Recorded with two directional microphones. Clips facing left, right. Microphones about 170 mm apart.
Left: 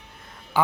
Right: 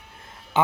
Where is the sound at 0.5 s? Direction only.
20° right (ahead or behind).